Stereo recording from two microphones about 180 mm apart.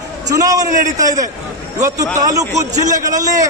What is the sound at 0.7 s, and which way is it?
Speech, 45° right (ahead or behind).